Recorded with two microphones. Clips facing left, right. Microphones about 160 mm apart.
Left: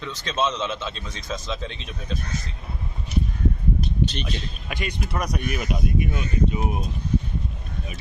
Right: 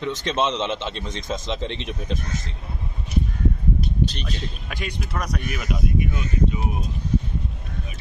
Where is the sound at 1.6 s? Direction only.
65° right (ahead or behind).